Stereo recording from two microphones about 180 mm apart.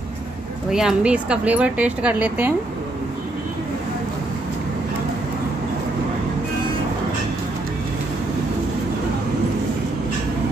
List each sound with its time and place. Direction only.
0.7 s speech: 5° right (ahead or behind)